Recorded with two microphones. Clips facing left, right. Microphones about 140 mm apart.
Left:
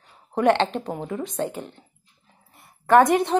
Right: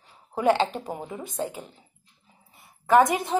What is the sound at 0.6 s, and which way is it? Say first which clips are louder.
Speech: left 2 dB; 55° left (ahead or behind).